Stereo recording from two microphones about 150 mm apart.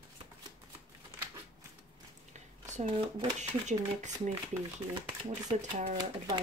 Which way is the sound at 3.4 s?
50° right (ahead or behind).